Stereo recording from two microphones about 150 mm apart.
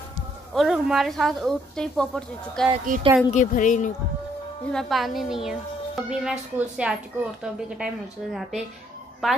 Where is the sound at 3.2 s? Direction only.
55° left (ahead or behind).